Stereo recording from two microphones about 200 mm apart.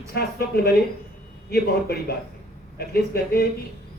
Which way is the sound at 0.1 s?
50° left (ahead or behind).